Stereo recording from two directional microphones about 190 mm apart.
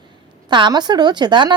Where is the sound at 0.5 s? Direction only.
25° right (ahead or behind).